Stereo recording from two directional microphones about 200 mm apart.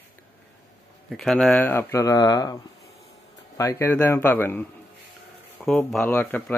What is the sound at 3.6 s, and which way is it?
Speech, 15° left (ahead or behind).